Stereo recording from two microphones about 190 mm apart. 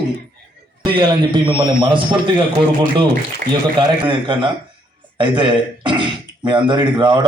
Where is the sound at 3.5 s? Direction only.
25° right (ahead or behind).